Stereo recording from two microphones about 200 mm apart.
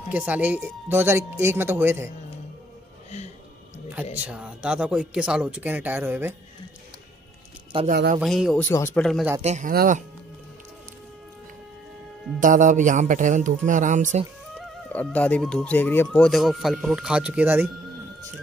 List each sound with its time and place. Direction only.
0.1 s speech: 10° right (ahead or behind)
3.9 s speech: 5° right (ahead or behind)
7.9 s speech: 50° right (ahead or behind)
8.2 s speech: centre (ahead or behind)
8.6 s speech: 10° left (ahead or behind)
9.4 s speech: 35° right (ahead or behind)
12.4 s speech: 40° right (ahead or behind)
14.9 s speech: 10° left (ahead or behind); by 17.6 s 10° right (ahead or behind)